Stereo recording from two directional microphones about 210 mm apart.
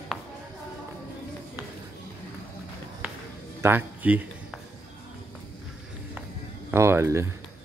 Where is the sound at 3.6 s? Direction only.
10° right (ahead or behind).